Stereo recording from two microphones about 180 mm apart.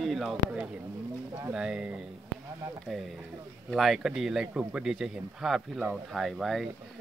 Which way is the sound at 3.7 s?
Centre (ahead or behind).